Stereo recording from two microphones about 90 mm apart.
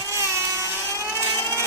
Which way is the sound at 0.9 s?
30° left (ahead or behind).